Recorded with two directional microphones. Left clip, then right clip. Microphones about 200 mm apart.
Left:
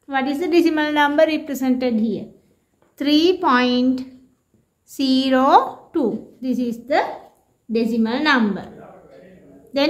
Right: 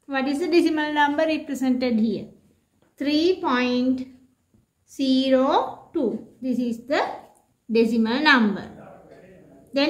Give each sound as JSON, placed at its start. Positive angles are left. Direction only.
{"t": 0.0, "sound": "a woman's voice", "side_deg": 25}
{"t": 3.0, "sound": "a woman's voice", "side_deg": 35}